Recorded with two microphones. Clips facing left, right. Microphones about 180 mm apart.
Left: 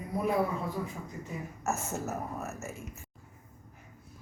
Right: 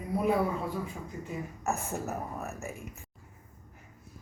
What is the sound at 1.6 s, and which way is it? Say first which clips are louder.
A woman's voice: even; 15° right (ahead or behind).